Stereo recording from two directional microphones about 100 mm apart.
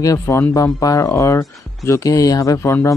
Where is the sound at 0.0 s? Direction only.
35° left (ahead or behind).